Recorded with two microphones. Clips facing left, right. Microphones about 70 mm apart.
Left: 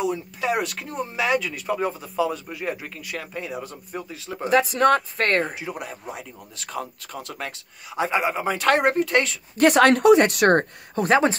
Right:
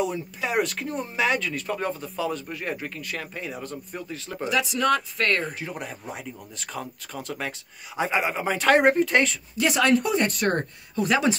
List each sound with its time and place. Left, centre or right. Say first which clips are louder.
0.0 s speech: left 2 dB; centre
4.5 s speech: left 5 dB; left
5.5 s speech: left 2 dB; centre
9.6 s speech: left 6 dB; left
11.0 s speech: left 3 dB; left